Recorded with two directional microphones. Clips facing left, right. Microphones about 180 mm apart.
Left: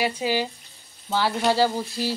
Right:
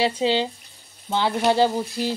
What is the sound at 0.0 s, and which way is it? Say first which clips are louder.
Frying: right 3 dB; 25° right (ahead or behind).